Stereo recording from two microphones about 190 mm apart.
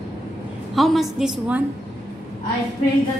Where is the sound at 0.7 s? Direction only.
Centre (ahead or behind).